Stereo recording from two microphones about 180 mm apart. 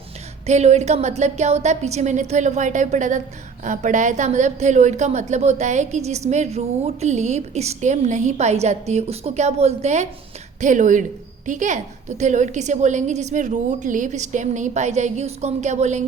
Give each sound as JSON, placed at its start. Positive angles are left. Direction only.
{"t": 0.4, "sound": "a woman's voice", "side_deg": -40}